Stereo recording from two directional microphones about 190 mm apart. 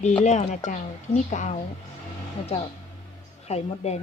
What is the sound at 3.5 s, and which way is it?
Speech, 35° left (ahead or behind).